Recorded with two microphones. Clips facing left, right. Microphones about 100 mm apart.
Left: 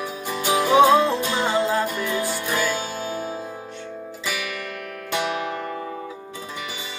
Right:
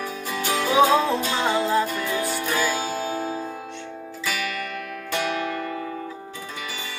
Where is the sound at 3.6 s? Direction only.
5° left (ahead or behind).